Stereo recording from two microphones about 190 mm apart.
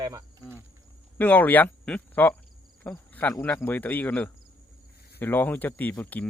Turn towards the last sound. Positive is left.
turn(degrees=10)  # may be behind; listen again after turning